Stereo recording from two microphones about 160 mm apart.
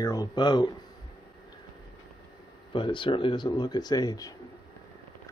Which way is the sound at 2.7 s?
30° left (ahead or behind).